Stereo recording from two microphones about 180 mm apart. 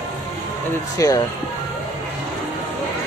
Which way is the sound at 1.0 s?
20° left (ahead or behind).